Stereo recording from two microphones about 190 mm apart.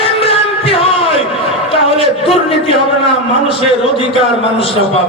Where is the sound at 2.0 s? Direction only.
30° left (ahead or behind).